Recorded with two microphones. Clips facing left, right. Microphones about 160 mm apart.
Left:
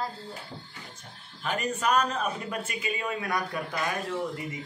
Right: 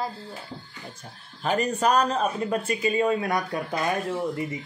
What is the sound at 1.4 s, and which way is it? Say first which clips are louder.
Speech: right 6 dB; 35° right (ahead or behind).